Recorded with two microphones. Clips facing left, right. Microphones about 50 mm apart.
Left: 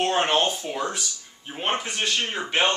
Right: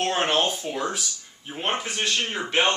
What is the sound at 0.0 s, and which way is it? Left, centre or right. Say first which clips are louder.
A man's voice: left 1 dB; centre.